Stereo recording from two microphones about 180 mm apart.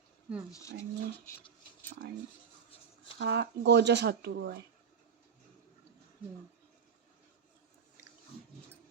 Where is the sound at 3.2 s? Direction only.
70° right (ahead or behind).